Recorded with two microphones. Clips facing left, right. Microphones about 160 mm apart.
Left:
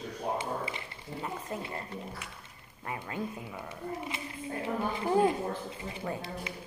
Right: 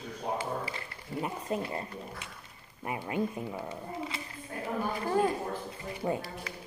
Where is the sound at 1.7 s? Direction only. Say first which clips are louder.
Right 1 dB; 25° right (ahead or behind).